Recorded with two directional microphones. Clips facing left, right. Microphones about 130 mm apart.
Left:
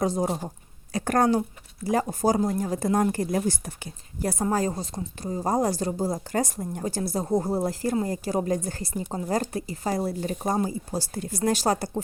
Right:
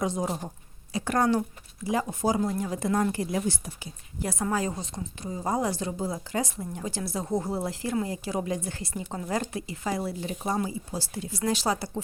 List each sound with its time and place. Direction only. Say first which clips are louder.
0.0 s a woman's voice: left 4 dB; 35° left (ahead or behind); by 4.3 s 55° left (ahead or behind)
4.3 s a woman's voice: left 3 dB; 40° left (ahead or behind)